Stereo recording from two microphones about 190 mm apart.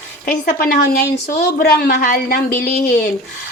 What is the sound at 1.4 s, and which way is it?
A woman's voice, 55° left (ahead or behind).